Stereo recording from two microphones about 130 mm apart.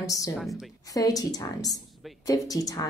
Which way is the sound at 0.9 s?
30° left (ahead or behind).